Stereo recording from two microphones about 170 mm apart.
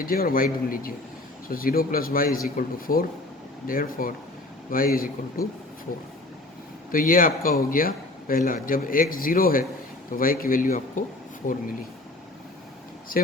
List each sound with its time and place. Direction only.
0.0 s speech: 60° left (ahead or behind)
6.9 s speech: 55° left (ahead or behind)